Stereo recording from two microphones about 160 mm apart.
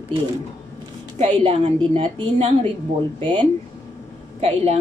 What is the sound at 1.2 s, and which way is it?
A woman's voice, 40° right (ahead or behind).